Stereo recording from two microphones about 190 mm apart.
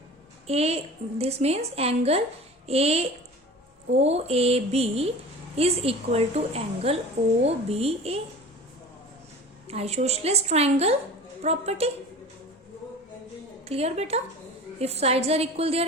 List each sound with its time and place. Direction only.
0.4 s a woman's voice: 35° right (ahead or behind)
9.6 s a woman's voice: 35° right (ahead or behind)
13.7 s a woman's voice: 35° right (ahead or behind)